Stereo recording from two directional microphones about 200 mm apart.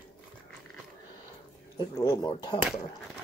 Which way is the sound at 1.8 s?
20° left (ahead or behind).